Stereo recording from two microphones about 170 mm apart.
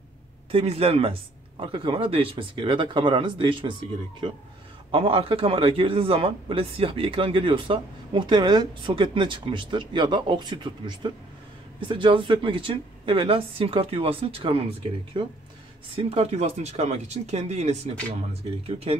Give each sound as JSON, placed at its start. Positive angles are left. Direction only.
{"t": 0.5, "sound": "a woman's voice", "side_deg": -35}
{"t": 4.9, "sound": "a man's voice", "side_deg": -30}